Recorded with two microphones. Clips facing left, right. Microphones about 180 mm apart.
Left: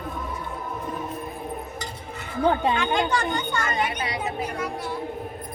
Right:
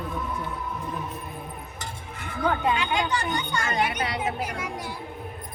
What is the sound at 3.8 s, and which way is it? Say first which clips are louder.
Speech: even; 60° right (ahead or behind).